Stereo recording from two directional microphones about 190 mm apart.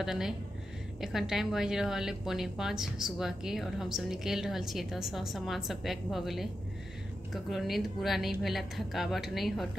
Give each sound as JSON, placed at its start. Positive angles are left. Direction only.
{"t": 0.0, "sound": "a woman's voice", "side_deg": 0}